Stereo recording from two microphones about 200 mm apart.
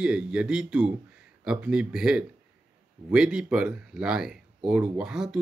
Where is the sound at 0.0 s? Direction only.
5° right (ahead or behind).